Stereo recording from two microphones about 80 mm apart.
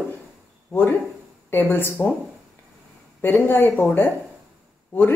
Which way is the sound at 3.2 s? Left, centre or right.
Left.